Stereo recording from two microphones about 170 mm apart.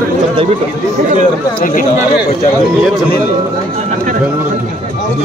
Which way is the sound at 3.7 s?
50° right (ahead or behind).